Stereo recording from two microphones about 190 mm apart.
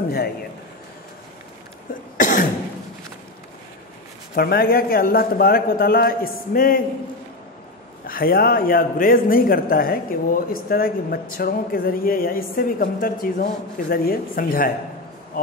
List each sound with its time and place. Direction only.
2.1 s cough: 45° left (ahead or behind)
4.4 s a woman's voice: 50° left (ahead or behind)
8.1 s a woman's voice: 50° left (ahead or behind)